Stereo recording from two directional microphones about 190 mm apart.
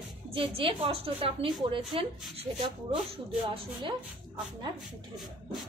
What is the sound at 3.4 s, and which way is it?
Speech, 25° right (ahead or behind).